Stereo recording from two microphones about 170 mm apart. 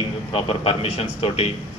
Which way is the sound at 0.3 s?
35° left (ahead or behind).